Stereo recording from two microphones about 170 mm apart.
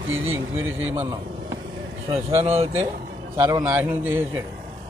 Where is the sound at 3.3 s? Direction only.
10° right (ahead or behind).